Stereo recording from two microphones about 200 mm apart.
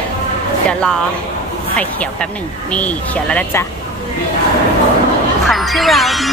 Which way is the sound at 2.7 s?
5° left (ahead or behind).